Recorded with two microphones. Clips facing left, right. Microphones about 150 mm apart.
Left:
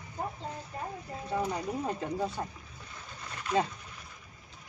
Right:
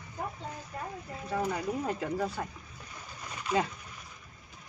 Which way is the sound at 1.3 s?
25° left (ahead or behind).